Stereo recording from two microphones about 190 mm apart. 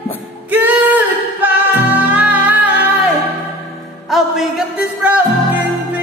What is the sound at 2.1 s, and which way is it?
Music, 10° right (ahead or behind).